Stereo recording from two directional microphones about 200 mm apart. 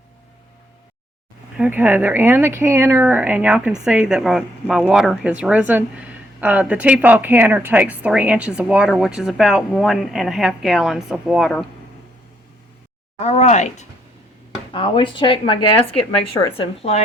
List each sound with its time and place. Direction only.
1.5 s speech: 5° right (ahead or behind)
13.1 s speech: 35° left (ahead or behind)
14.7 s speech: 25° left (ahead or behind)